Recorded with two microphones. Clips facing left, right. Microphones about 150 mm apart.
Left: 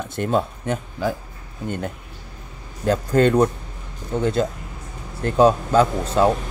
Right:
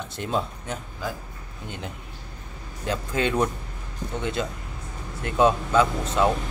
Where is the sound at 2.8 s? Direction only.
45° left (ahead or behind).